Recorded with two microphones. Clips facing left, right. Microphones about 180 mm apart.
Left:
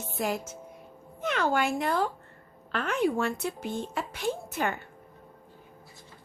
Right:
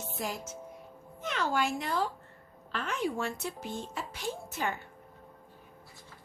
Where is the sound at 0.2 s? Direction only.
60° left (ahead or behind).